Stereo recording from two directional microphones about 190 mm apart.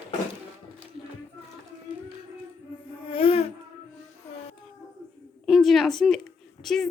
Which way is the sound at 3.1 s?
30° left (ahead or behind).